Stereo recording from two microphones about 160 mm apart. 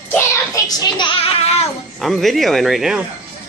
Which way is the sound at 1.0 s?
35° left (ahead or behind).